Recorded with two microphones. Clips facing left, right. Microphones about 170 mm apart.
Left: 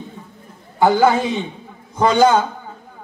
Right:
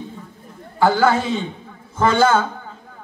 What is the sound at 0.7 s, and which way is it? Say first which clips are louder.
A man's voice: left 2 dB; 20° left (ahead or behind).